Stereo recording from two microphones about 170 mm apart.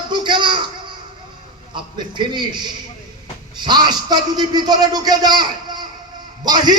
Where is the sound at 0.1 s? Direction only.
25° right (ahead or behind).